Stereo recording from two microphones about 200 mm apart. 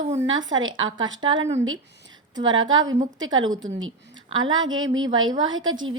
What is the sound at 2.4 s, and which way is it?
A woman's voice, 75° right (ahead or behind).